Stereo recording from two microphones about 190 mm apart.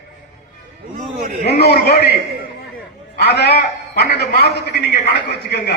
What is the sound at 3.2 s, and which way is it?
A man's voice, 60° left (ahead or behind).